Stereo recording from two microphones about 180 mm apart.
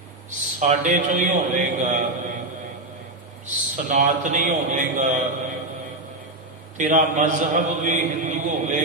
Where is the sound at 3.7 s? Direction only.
45° right (ahead or behind).